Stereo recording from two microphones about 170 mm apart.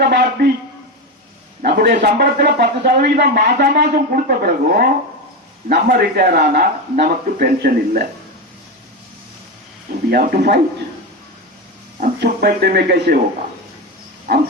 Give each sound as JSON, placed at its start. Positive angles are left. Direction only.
{"t": 0.0, "sound": "a man's voice", "side_deg": -70}
{"t": 1.6, "sound": "a man's voice", "side_deg": -70}
{"t": 10.1, "sound": "a man's voice", "side_deg": -65}
{"t": 11.9, "sound": "speech", "side_deg": -60}